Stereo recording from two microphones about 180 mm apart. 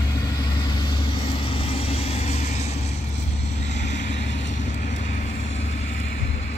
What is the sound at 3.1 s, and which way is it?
Vehicle, 75° left (ahead or behind).